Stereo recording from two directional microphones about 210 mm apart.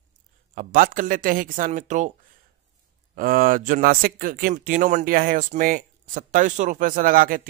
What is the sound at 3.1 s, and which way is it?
Speech, 45° right (ahead or behind).